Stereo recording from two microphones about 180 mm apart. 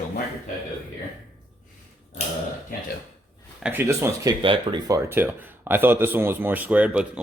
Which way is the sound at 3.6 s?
10° right (ahead or behind).